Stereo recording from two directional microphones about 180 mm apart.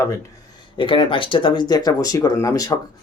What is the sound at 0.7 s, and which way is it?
Speech, 25° left (ahead or behind).